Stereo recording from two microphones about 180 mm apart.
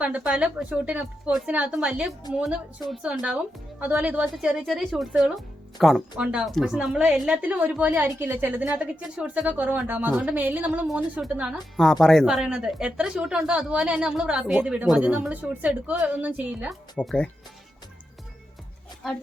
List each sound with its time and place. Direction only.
0.0 s a woman's voice: 5° right (ahead or behind)
17.0 s a woman's voice: 5° left (ahead or behind)